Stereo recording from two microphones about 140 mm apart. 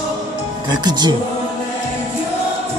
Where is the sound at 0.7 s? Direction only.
30° right (ahead or behind).